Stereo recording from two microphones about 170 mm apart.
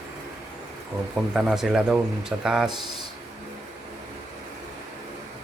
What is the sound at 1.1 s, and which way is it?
Speech, 5° right (ahead or behind).